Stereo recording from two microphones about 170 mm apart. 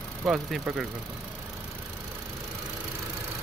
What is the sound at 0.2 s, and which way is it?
Speech, 5° right (ahead or behind).